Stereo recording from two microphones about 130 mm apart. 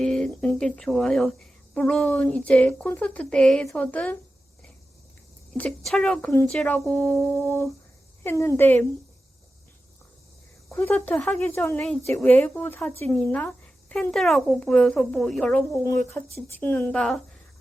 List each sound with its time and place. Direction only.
0.0 s speech: 5° left (ahead or behind)
5.5 s speech: 5° left (ahead or behind)
8.2 s speech: 20° left (ahead or behind)
10.8 s speech: 15° left (ahead or behind)
15.7 s speech: 20° left (ahead or behind)
16.6 s speech: 10° left (ahead or behind)